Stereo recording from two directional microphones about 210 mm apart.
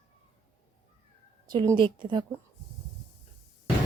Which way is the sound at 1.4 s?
20° right (ahead or behind).